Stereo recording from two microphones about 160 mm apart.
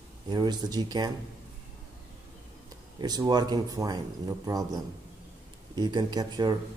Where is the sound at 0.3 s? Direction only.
25° right (ahead or behind).